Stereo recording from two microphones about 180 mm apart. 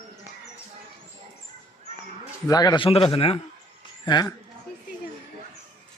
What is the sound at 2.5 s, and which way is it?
A man's voice, 20° left (ahead or behind).